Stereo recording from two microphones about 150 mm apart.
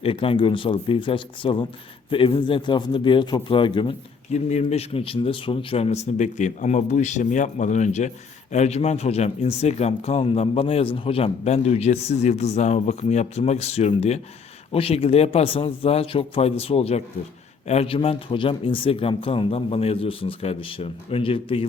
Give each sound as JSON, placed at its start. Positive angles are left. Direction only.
{"t": 0.0, "sound": "speech", "side_deg": 40}
{"t": 4.3, "sound": "speech", "side_deg": 50}